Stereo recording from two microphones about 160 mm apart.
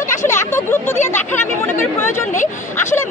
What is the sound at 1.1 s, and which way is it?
Speech, 15° left (ahead or behind).